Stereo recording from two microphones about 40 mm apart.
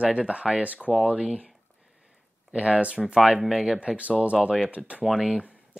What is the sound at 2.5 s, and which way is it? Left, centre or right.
Speech, right.